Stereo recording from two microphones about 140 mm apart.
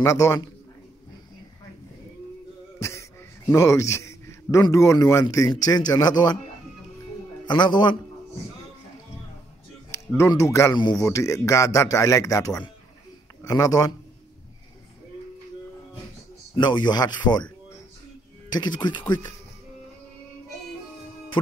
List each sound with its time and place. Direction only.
0.0 s speech: 20° left (ahead or behind)
2.8 s a man's voice: 20° left (ahead or behind)
7.4 s speech: 35° left (ahead or behind)
9.8 s a man's voice: 20° left (ahead or behind)
16.5 s speech: 35° left (ahead or behind)
18.5 s speech: 30° left (ahead or behind)